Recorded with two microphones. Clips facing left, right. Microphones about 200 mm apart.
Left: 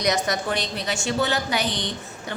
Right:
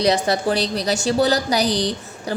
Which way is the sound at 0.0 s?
30° right (ahead or behind).